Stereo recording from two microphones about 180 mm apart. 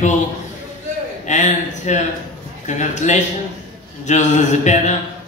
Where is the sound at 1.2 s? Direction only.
40° left (ahead or behind).